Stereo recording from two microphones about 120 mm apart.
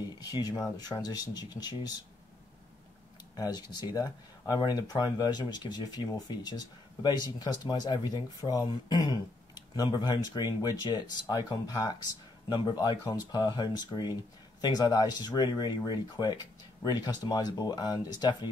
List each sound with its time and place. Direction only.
0.2 s speech: 35° left (ahead or behind)
3.3 s speech: 35° left (ahead or behind)